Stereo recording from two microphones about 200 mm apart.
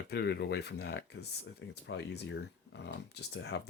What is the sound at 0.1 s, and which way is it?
Speech, 55° left (ahead or behind).